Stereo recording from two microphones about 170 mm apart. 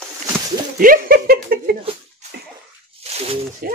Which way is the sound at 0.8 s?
55° right (ahead or behind).